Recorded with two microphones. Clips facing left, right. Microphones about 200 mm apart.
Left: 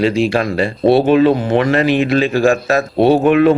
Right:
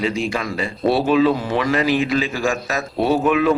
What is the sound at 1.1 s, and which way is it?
Speech, 55° left (ahead or behind).